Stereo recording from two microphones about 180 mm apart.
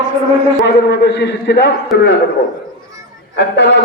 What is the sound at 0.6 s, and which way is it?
A man's voice, 65° left (ahead or behind).